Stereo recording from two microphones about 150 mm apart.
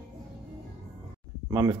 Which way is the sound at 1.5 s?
25° right (ahead or behind).